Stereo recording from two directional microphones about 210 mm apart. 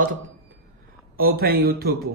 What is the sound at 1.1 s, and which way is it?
Speech, 45° right (ahead or behind).